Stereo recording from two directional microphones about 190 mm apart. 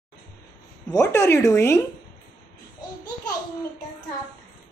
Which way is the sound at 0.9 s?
15° left (ahead or behind).